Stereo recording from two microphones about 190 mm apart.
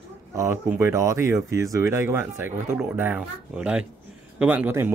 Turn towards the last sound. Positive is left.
turn(degrees=-10)  # may be behind; listen again after turning